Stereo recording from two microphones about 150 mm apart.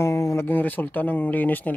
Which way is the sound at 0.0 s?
20° left (ahead or behind).